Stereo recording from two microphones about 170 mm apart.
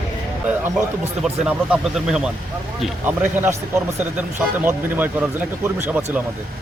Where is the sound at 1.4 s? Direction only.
5° right (ahead or behind).